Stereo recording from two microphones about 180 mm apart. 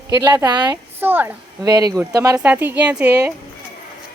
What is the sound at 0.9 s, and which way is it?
A woman's voice, 10° right (ahead or behind).